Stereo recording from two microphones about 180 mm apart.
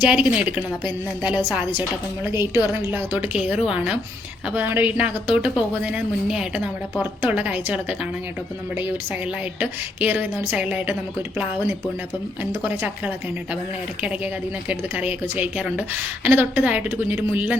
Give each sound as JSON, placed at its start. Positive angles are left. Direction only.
{"t": 0.0, "sound": "a woman's voice", "side_deg": -5}
{"t": 0.7, "sound": "a woman's voice", "side_deg": 25}
{"t": 2.2, "sound": "a woman's voice", "side_deg": -15}
{"t": 9.6, "sound": "a woman's voice", "side_deg": -10}
{"t": 14.7, "sound": "a woman's voice", "side_deg": -10}